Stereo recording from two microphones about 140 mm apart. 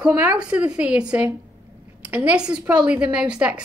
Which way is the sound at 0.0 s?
5° right (ahead or behind).